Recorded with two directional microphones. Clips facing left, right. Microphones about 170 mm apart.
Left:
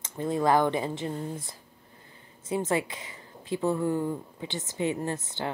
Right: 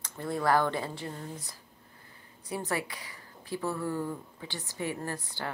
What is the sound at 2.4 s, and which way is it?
A woman's voice, 20° left (ahead or behind).